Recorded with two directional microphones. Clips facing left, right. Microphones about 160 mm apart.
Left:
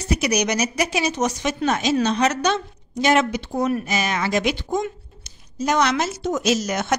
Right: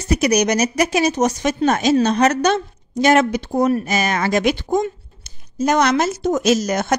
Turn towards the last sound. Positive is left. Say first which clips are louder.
# right 4 dB
turn(degrees=-40)  # may be behind; listen again after turning